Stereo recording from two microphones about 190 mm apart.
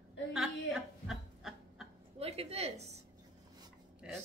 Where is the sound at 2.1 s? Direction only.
30° right (ahead or behind).